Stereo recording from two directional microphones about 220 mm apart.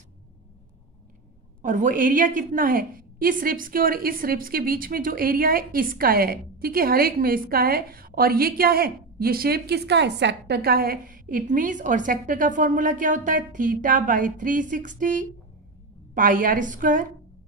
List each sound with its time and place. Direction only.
1.6 s a woman's voice: 35° right (ahead or behind)